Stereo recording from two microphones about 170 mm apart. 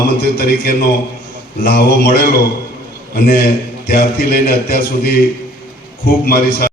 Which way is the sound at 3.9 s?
60° left (ahead or behind).